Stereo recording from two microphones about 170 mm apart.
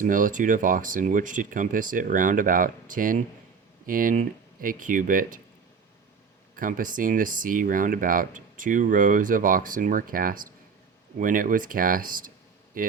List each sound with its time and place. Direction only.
0.0 s speech: 50° right (ahead or behind)
6.6 s a man's voice: 55° right (ahead or behind)